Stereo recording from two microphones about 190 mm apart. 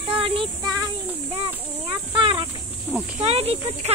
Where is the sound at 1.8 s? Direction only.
25° right (ahead or behind).